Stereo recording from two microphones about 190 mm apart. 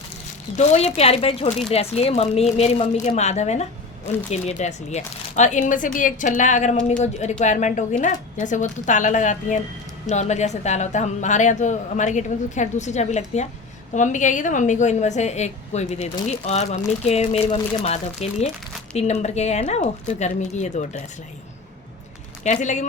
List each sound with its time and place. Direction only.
0.5 s speech: 35° left (ahead or behind)
22.4 s speech: 40° left (ahead or behind)